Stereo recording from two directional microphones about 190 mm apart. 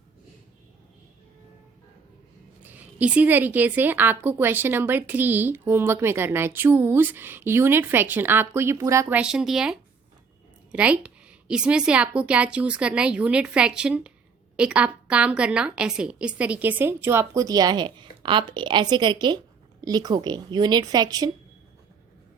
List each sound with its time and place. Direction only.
2.6 s a woman's voice: 10° right (ahead or behind)